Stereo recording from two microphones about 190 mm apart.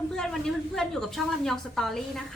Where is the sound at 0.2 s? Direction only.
5° left (ahead or behind).